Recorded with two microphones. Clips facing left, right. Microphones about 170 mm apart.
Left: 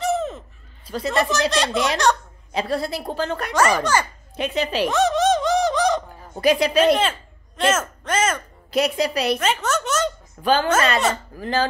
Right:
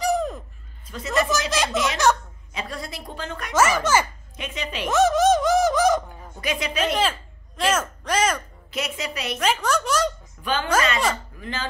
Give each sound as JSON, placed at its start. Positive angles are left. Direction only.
{"t": 0.0, "sound": "a sound", "side_deg": 0}
{"t": 0.8, "sound": "a woman's voice", "side_deg": 35}
{"t": 1.5, "sound": "speech", "side_deg": 0}
{"t": 2.5, "sound": "a woman's voice", "side_deg": 35}
{"t": 4.8, "sound": "a sound", "side_deg": -5}
{"t": 6.3, "sound": "a woman's voice", "side_deg": 35}
{"t": 7.0, "sound": "speech", "side_deg": -5}
{"t": 8.6, "sound": "a woman's voice", "side_deg": 35}
{"t": 9.4, "sound": "speech", "side_deg": 5}
{"t": 10.4, "sound": "a woman's voice", "side_deg": 35}